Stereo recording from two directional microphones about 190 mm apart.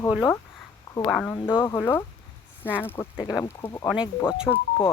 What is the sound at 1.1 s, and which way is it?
Speech, 5° left (ahead or behind).